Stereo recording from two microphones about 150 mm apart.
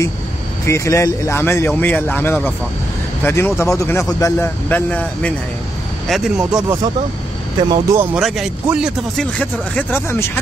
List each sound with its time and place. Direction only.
0.7 s speech: 20° left (ahead or behind)
6.0 s speech: centre (ahead or behind)
7.7 s speech: 20° right (ahead or behind)
8.1 s speech: 5° right (ahead or behind); by 10.4 s 15° left (ahead or behind)